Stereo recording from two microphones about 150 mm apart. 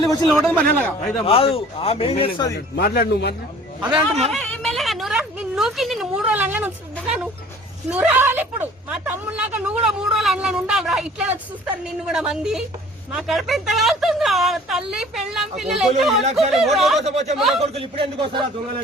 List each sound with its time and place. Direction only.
0.3 s a man's voice: 5° left (ahead or behind)
1.2 s speech: 40° left (ahead or behind)
2.8 s a man's voice: 90° left
3.8 s speech: 5° right (ahead or behind)
4.3 s a sound: 5° left (ahead or behind)
7.9 s a woman's voice: 10° right (ahead or behind)
17.0 s speech: 45° right (ahead or behind)